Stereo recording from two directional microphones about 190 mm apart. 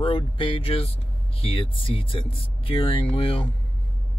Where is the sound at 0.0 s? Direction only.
30° left (ahead or behind).